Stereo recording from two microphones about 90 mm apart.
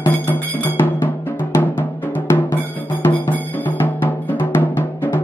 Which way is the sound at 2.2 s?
30° left (ahead or behind).